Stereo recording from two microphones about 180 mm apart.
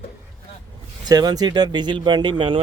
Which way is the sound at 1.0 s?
20° right (ahead or behind).